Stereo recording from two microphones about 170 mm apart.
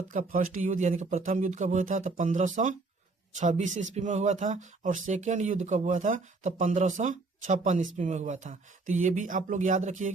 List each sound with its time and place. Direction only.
0.1 s speech: 50° right (ahead or behind)